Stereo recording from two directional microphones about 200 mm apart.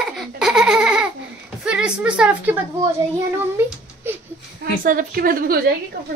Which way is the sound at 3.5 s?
10° right (ahead or behind).